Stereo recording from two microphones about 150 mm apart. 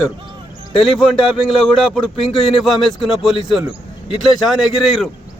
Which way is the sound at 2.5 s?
Centre (ahead or behind).